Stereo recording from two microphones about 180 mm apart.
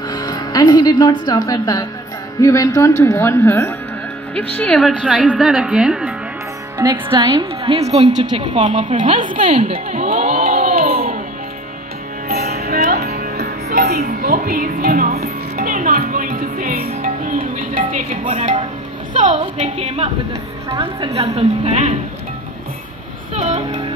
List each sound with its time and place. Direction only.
0.1 s a woman's voice: 20° left (ahead or behind); by 6.1 s 5° right (ahead or behind)
6.8 s a woman's voice: 20° right (ahead or behind); by 9.6 s 45° right (ahead or behind)
9.6 s a woman's voice: 35° right (ahead or behind)
10.0 s a sound: 50° right (ahead or behind)
12.3 s music: 60° right (ahead or behind); by 18.6 s 45° right (ahead or behind)
19.4 s a woman's voice: 35° right (ahead or behind)
23.3 s speech: 40° right (ahead or behind)